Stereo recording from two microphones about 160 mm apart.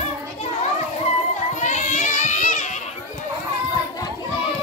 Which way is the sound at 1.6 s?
50° left (ahead or behind).